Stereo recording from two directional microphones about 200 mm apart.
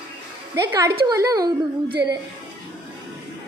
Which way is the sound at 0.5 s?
20° right (ahead or behind).